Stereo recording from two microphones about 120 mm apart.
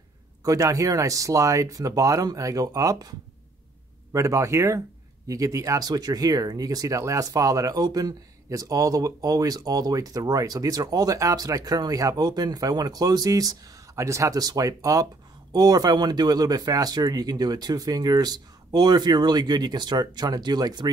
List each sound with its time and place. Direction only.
0.4 s speech: 30° right (ahead or behind)